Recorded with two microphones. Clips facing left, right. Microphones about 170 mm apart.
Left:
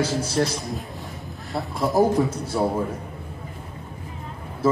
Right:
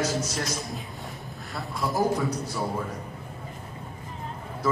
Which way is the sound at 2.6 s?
50° left (ahead or behind).